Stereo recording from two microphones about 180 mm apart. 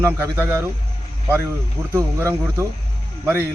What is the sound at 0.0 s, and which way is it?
Speech, 15° right (ahead or behind).